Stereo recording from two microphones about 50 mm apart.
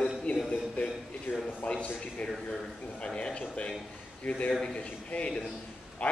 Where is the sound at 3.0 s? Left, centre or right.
Centre.